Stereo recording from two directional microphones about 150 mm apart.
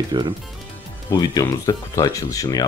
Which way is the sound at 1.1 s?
25° left (ahead or behind).